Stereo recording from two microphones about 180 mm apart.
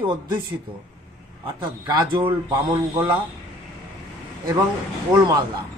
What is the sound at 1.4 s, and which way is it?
A man's voice, 30° right (ahead or behind).